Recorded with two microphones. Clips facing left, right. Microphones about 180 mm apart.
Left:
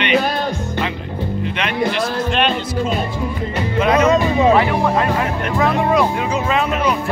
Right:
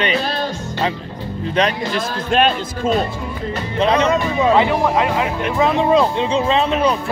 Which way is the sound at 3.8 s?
30° right (ahead or behind).